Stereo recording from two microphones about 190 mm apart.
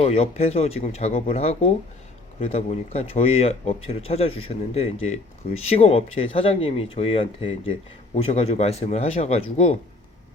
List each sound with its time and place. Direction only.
0.0 s speech: 30° left (ahead or behind)